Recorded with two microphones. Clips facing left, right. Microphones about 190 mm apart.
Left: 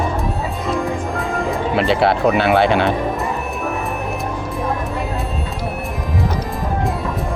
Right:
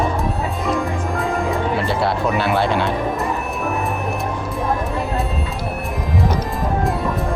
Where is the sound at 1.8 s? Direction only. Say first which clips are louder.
Left 4 dB; 70° left (ahead or behind).